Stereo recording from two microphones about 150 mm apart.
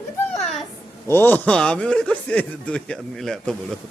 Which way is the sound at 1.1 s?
15° left (ahead or behind).